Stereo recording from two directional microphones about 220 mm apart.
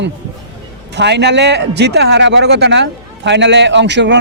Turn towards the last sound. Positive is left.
turn(degrees=-50)  # may be behind; listen again after turning